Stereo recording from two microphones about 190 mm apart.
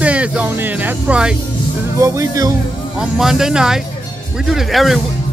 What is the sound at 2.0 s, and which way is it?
Speech, 15° right (ahead or behind).